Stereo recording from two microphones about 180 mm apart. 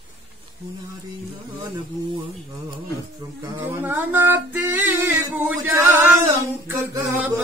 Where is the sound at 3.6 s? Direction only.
10° right (ahead or behind).